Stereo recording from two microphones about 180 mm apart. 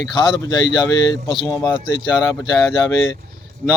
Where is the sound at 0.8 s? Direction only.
30° left (ahead or behind).